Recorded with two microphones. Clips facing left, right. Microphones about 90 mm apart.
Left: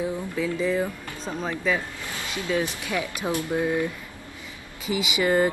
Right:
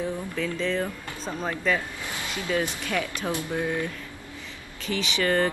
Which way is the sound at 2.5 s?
10° left (ahead or behind).